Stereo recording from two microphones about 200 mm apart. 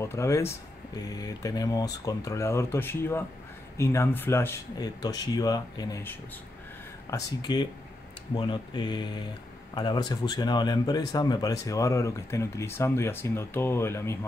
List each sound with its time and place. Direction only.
0.0 s speech: 15° left (ahead or behind)